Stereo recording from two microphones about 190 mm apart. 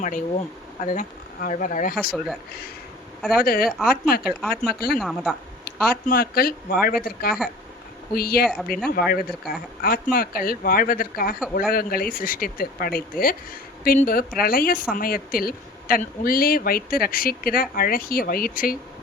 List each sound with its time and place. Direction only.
0.0 s speech: 40° left (ahead or behind)
3.3 s speech: 50° left (ahead or behind)
4.3 s speech: 5° left (ahead or behind)
5.6 s speech: 55° left (ahead or behind)